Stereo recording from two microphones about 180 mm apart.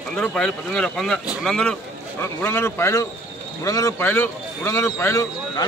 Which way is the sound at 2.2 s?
15° left (ahead or behind).